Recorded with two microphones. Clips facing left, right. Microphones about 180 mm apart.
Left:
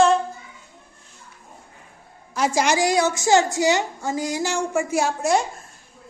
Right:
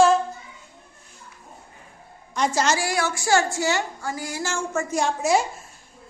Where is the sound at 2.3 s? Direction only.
10° left (ahead or behind).